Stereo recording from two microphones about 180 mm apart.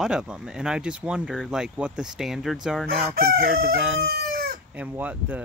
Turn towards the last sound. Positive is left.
turn(degrees=-10)  # may be behind; listen again after turning